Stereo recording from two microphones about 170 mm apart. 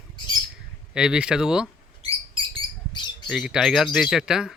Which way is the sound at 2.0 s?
35° right (ahead or behind).